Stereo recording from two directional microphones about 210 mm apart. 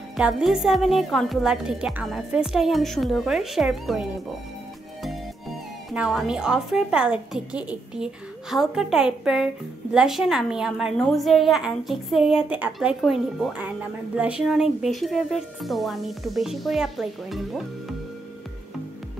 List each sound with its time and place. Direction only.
0.2 s a woman's voice: centre (ahead or behind)